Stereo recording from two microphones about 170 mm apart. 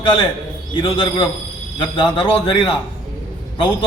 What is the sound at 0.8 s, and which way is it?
A man's voice, 30° left (ahead or behind).